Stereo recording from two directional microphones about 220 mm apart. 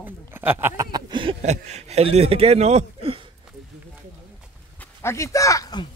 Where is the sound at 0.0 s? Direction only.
10° right (ahead or behind); by 3.2 s 30° right (ahead or behind).